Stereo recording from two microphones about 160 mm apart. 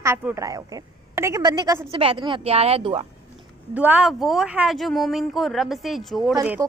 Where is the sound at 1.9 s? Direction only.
35° right (ahead or behind).